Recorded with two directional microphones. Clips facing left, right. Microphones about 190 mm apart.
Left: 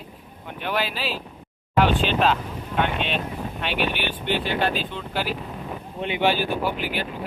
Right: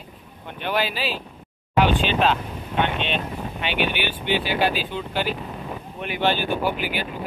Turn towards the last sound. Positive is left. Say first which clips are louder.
# right 1 dB
turn(degrees=0)  # may be behind; listen again after turning